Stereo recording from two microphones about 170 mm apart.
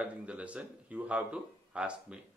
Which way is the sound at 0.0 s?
5° right (ahead or behind).